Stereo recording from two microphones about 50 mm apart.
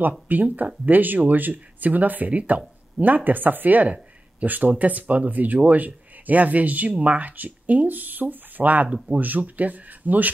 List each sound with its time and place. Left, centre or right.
0.3 s speech: right